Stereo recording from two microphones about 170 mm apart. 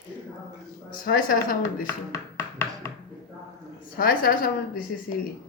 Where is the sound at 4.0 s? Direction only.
55° left (ahead or behind).